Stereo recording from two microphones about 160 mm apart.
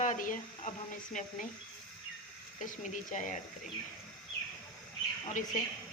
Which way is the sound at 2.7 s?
50° left (ahead or behind).